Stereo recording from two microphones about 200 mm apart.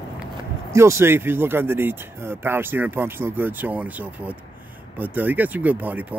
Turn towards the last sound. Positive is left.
turn(degrees=-10)  # may be behind; listen again after turning